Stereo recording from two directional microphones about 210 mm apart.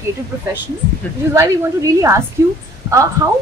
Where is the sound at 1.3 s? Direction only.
15° right (ahead or behind).